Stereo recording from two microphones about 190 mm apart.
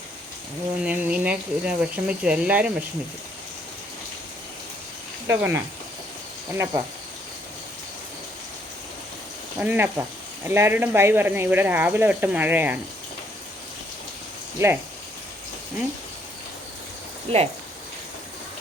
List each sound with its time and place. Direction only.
0.8 s speech: 5° right (ahead or behind)
5.3 s speech: 15° right (ahead or behind)
9.6 s speech: 10° right (ahead or behind)
17.2 s speech: 30° right (ahead or behind)